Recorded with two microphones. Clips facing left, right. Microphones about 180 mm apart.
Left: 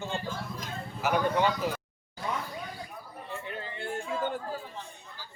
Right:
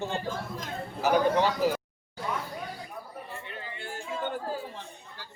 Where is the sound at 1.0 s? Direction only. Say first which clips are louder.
Right 3 dB; 35° right (ahead or behind).